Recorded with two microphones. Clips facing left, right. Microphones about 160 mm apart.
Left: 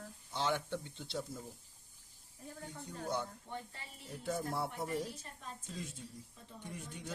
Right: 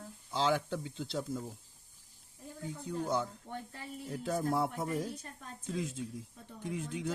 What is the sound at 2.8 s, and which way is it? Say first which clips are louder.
Speech: right 6 dB; 90° right.